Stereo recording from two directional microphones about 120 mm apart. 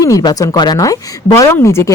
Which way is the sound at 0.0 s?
30° left (ahead or behind).